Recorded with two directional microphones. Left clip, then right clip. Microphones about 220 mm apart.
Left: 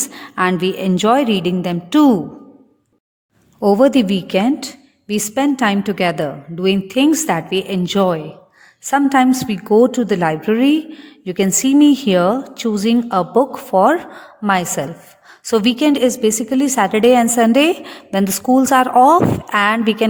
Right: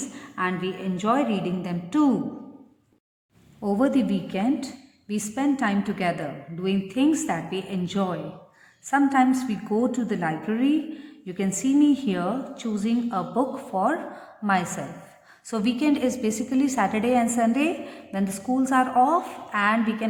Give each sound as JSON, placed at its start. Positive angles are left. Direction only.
{"t": 0.0, "sound": "a woman's voice", "side_deg": 50}
{"t": 3.6, "sound": "a woman's voice", "side_deg": 45}